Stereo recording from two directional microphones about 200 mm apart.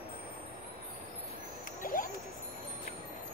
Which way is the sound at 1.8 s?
45° left (ahead or behind).